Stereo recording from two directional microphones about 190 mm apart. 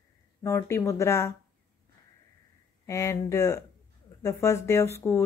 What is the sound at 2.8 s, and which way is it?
A woman's voice, 15° left (ahead or behind).